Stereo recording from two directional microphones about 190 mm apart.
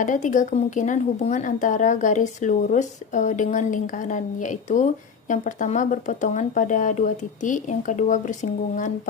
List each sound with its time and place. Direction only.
0.0 s speech: 40° left (ahead or behind)